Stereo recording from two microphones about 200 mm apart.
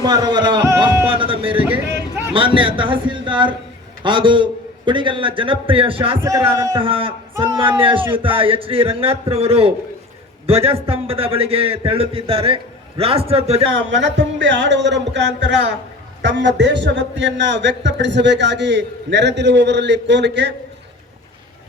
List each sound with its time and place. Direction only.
0.0 s a sound: 20° right (ahead or behind)
1.2 s a man's voice: 25° right (ahead or behind)
6.1 s speech: 15° right (ahead or behind)
6.7 s a man's voice: 25° right (ahead or behind)
13.7 s a man's voice: 65° right (ahead or behind)